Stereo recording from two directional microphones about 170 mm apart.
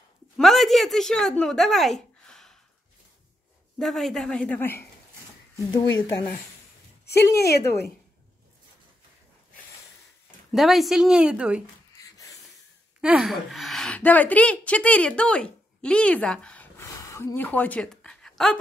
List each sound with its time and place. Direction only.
0.4 s speech: centre (ahead or behind)
3.7 s speech: centre (ahead or behind)
7.3 s speech: 70° left (ahead or behind)
10.5 s speech: centre (ahead or behind)
13.0 s a woman's voice: centre (ahead or behind)